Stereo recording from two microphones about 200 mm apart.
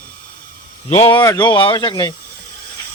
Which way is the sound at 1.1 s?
15° left (ahead or behind).